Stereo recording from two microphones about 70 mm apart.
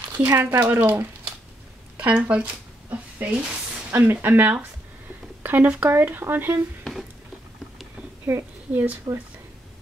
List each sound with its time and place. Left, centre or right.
0.2 s speech: right
2.0 s speech: centre
3.9 s speech: right
6.8 s a sound: centre
8.3 s a woman's voice: right
9.1 s speech: right